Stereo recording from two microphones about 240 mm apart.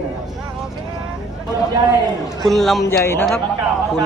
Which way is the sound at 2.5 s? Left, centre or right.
Centre.